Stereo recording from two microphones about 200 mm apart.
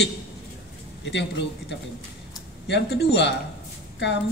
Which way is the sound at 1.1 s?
60° left (ahead or behind).